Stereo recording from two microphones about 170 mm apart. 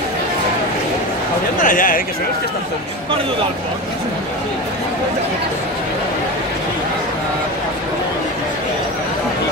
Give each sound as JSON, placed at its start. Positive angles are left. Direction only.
{"t": 1.6, "sound": "speech", "side_deg": 55}